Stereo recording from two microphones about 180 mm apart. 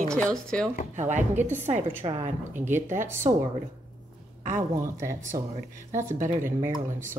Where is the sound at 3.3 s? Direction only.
30° right (ahead or behind).